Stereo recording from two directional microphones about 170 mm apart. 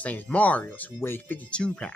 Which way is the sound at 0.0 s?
10° left (ahead or behind).